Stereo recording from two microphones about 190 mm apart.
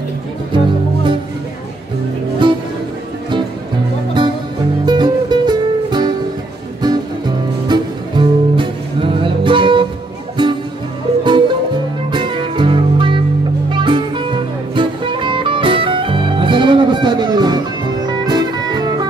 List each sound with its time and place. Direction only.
2.4 s music: 25° right (ahead or behind)
4.8 s music: 25° right (ahead or behind)